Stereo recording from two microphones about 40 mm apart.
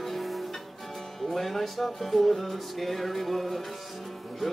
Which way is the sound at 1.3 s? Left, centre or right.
Centre.